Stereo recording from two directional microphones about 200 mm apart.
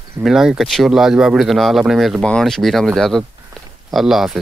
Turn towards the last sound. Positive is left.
turn(degrees=0)  # may be behind; listen again after turning